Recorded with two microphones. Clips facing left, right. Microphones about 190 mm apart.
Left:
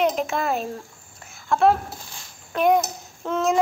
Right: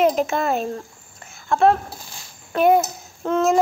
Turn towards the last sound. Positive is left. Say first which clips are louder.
# right 4 dB
turn(degrees=0)  # may be behind; listen again after turning